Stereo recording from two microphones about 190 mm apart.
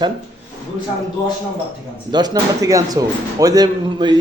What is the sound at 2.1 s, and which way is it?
A man's voice, 20° right (ahead or behind).